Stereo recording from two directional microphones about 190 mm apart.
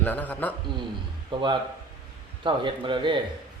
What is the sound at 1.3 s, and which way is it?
A man's voice, 25° right (ahead or behind).